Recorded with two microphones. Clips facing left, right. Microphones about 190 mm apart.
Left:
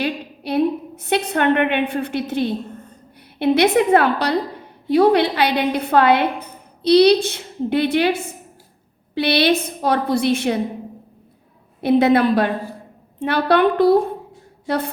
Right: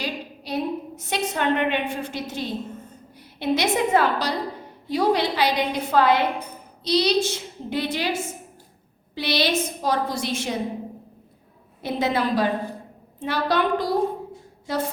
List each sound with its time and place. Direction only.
0.0 s a sound: 60° left (ahead or behind)
3.3 s a woman's voice: 60° left (ahead or behind)
11.8 s a woman's voice: 60° left (ahead or behind)